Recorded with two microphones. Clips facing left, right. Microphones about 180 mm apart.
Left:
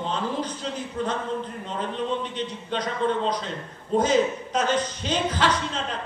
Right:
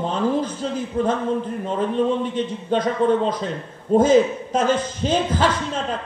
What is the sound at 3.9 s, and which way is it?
A man's voice, 50° right (ahead or behind).